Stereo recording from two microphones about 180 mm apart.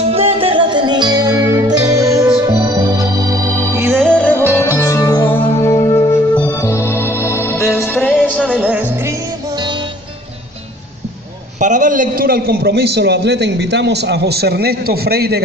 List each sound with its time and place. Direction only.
0.1 s music: 30° right (ahead or behind)
2.6 s organ: 20° right (ahead or behind)
3.9 s music: 5° left (ahead or behind)
5.6 s organ: 20° left (ahead or behind)
7.6 s music: centre (ahead or behind)
8.6 s music: 10° right (ahead or behind)
11.6 s a man's voice: 45° right (ahead or behind); by 15.4 s 60° right (ahead or behind)